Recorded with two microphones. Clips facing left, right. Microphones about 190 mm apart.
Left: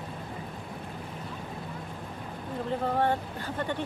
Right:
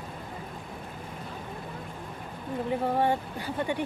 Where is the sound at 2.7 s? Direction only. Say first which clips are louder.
Right 1 dB; 15° right (ahead or behind).